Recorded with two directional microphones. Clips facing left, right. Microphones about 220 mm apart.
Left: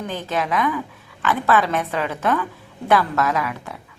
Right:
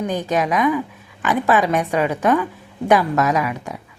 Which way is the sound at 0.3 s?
15° right (ahead or behind).